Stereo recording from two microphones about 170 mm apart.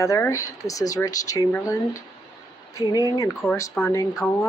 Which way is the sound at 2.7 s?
20° left (ahead or behind).